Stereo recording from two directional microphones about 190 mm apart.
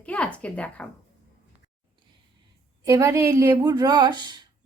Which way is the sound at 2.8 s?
15° right (ahead or behind).